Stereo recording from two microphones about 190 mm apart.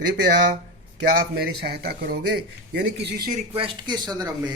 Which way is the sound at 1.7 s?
55° right (ahead or behind).